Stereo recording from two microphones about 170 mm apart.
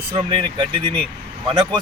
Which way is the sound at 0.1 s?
30° right (ahead or behind).